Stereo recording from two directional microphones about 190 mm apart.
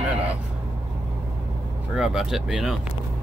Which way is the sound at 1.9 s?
5° right (ahead or behind).